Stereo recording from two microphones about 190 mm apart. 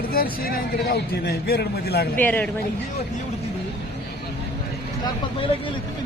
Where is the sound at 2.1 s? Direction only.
10° left (ahead or behind).